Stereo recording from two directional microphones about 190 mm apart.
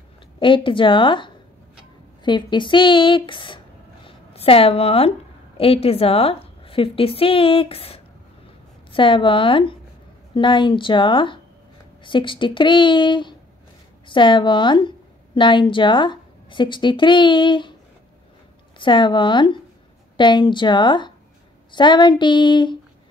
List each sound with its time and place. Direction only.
0.4 s a woman's voice: 25° left (ahead or behind)
18.8 s a woman's voice: 25° left (ahead or behind)